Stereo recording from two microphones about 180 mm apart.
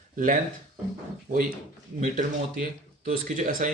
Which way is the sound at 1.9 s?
50° right (ahead or behind).